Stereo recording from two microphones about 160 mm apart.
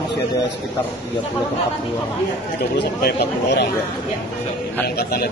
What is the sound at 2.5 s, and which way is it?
A man's voice, 90° left.